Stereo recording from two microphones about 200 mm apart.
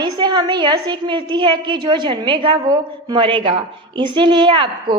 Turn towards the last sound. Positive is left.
turn(degrees=-25)  # may be behind; listen again after turning